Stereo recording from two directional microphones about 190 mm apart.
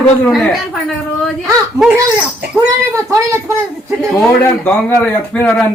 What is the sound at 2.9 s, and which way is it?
Speech, 15° right (ahead or behind).